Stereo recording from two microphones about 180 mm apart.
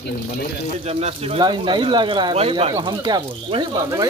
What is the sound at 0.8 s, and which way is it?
Speech, 35° right (ahead or behind).